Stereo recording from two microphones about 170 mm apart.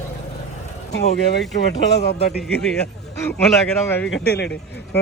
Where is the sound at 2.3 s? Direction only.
Centre (ahead or behind).